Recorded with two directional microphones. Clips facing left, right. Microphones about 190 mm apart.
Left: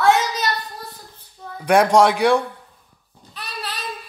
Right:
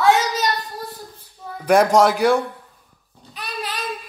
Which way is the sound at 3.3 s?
15° right (ahead or behind).